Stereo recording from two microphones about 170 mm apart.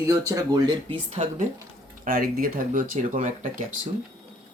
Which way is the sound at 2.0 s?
55° right (ahead or behind).